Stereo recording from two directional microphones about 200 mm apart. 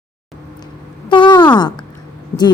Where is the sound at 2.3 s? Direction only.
10° left (ahead or behind).